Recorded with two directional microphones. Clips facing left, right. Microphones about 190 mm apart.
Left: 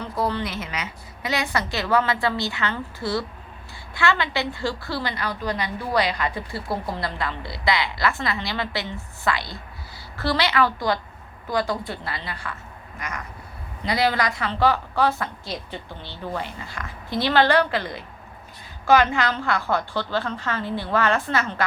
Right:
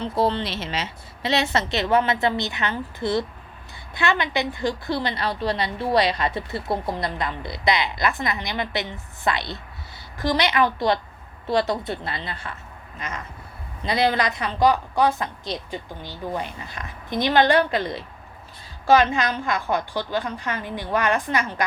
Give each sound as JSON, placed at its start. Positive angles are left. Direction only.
{"t": 0.0, "sound": "a woman's voice", "side_deg": -25}